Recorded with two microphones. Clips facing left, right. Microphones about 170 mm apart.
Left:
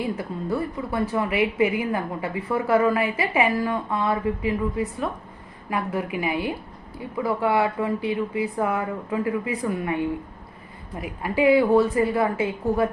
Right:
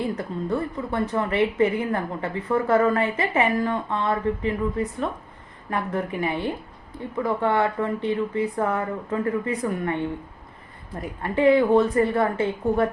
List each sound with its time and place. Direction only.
0.0 s a woman's voice: 5° left (ahead or behind)
5.7 s a woman's voice: 10° left (ahead or behind)